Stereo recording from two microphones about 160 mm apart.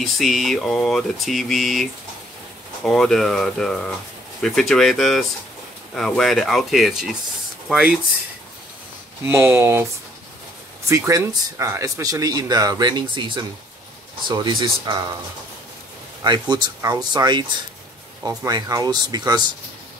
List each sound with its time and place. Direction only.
0.0 s speech: centre (ahead or behind)
9.2 s speech: 15° right (ahead or behind)
10.9 s speech: 20° right (ahead or behind)
16.3 s speech: 25° right (ahead or behind)